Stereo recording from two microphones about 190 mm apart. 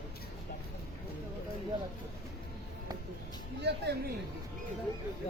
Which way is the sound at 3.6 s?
60° right (ahead or behind).